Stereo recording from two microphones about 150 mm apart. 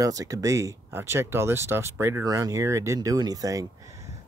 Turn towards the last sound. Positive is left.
turn(degrees=-20)  # may be behind; listen again after turning